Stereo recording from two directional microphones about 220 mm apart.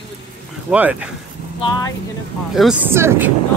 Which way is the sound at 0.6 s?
5° right (ahead or behind).